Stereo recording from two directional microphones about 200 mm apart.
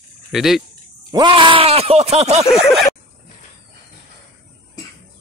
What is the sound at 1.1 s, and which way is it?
Speech, 25° right (ahead or behind).